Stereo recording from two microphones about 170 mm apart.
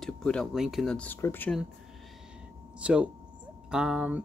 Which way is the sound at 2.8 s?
5° right (ahead or behind).